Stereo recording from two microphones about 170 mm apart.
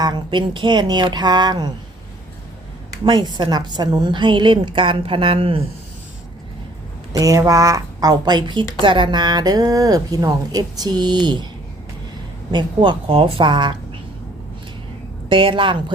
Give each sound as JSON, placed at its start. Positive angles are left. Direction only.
{"t": 0.0, "sound": "a woman's voice", "side_deg": -25}
{"t": 3.0, "sound": "a woman's voice", "side_deg": -25}
{"t": 7.1, "sound": "a woman's voice", "side_deg": -20}
{"t": 12.5, "sound": "a woman's voice", "side_deg": -25}
{"t": 15.3, "sound": "speech", "side_deg": -30}